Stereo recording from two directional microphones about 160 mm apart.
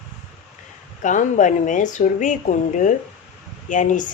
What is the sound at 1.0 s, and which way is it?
Speech, 50° left (ahead or behind).